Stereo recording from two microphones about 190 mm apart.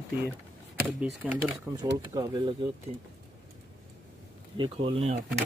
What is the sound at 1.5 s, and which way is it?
Speech, 20° right (ahead or behind).